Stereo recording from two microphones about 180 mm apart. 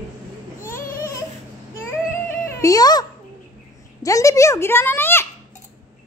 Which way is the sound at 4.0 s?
20° left (ahead or behind).